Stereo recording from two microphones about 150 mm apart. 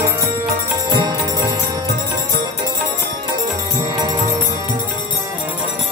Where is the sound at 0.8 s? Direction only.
25° right (ahead or behind).